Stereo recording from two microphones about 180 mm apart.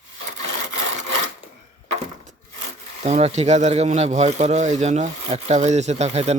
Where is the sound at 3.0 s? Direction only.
35° right (ahead or behind).